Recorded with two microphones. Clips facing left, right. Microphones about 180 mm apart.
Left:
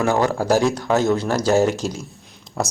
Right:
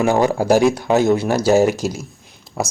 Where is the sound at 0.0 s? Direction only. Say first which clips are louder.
Right 3 dB; 15° right (ahead or behind).